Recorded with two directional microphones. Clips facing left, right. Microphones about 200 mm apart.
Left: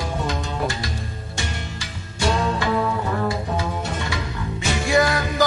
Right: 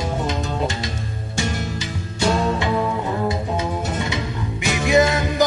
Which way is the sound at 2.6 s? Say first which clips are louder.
Right 1 dB; 20° right (ahead or behind).